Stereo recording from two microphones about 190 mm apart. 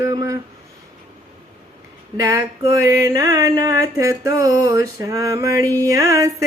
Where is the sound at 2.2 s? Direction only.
15° right (ahead or behind).